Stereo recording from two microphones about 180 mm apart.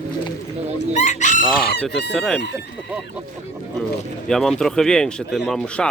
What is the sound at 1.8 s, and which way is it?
Speech, centre (ahead or behind).